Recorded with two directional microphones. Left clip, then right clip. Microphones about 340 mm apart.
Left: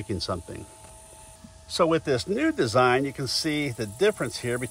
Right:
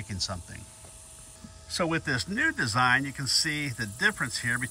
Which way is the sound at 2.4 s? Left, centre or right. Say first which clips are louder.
Left 3 dB; centre.